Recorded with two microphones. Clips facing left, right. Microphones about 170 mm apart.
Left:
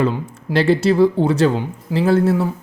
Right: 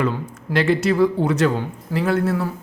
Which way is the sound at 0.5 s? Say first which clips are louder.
Left 3 dB; 30° left (ahead or behind).